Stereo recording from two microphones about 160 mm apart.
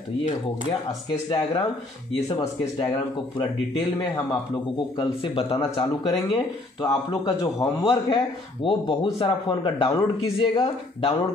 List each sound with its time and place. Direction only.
1.3 s a man's voice: 35° left (ahead or behind)
2.2 s a man's voice: 20° left (ahead or behind)